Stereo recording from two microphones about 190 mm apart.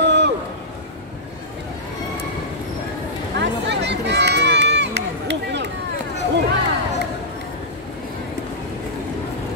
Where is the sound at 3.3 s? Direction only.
65° right (ahead or behind).